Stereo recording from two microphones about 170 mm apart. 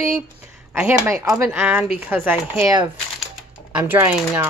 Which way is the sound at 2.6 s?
25° right (ahead or behind).